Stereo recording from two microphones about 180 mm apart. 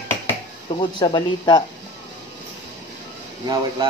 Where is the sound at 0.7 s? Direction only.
30° left (ahead or behind).